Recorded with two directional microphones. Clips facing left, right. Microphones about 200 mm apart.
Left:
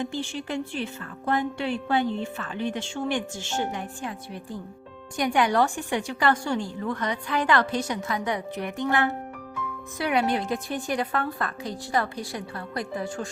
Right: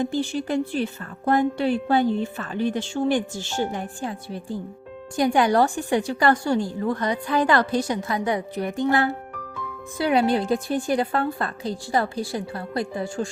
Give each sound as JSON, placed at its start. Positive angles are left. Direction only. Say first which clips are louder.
{"t": 0.0, "sound": "a woman's voice", "louder": "right 6 dB", "side_deg": -40}